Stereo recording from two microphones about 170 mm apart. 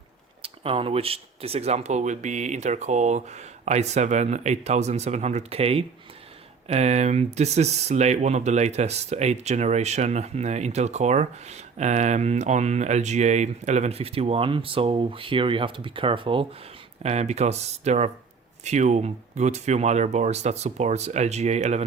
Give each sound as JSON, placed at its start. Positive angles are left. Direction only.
{"t": 0.4, "sound": "speech", "side_deg": -35}